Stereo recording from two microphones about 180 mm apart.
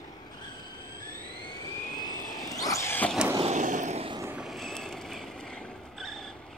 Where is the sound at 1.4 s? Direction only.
25° left (ahead or behind).